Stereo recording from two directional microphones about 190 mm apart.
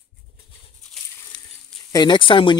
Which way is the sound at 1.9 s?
20° left (ahead or behind).